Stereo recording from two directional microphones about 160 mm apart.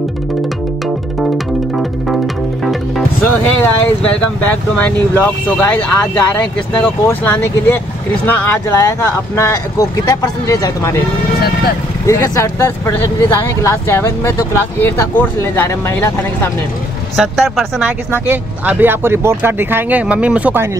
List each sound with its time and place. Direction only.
3.3 s speech: 10° left (ahead or behind)
12.1 s speech: 15° left (ahead or behind)
17.2 s speech: 5° right (ahead or behind)